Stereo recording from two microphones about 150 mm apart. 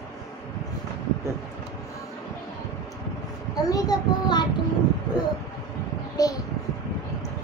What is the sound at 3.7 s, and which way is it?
Speech, 25° left (ahead or behind).